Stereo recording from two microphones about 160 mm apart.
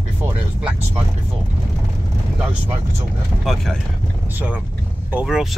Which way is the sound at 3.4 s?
Centre (ahead or behind).